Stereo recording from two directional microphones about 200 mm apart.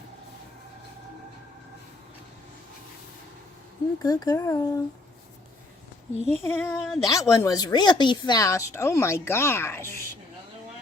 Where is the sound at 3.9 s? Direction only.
20° left (ahead or behind).